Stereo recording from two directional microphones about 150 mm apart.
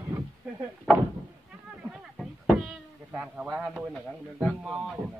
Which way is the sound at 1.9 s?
Centre (ahead or behind).